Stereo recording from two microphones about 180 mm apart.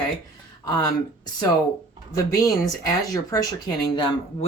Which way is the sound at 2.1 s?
20° left (ahead or behind).